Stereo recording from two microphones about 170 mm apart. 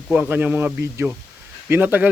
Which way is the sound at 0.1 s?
10° right (ahead or behind).